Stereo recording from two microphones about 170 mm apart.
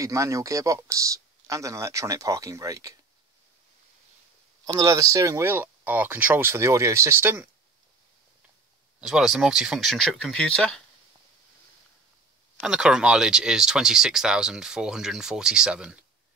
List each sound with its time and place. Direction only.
0.0 s speech: 20° right (ahead or behind)
4.6 s speech: 20° right (ahead or behind)
9.0 s speech: 5° right (ahead or behind)
12.5 s speech: 5° right (ahead or behind)